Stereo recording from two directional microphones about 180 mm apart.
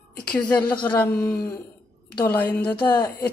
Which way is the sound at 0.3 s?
5° left (ahead or behind).